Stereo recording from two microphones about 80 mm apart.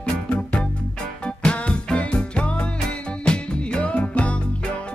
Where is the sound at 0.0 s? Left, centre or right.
Centre.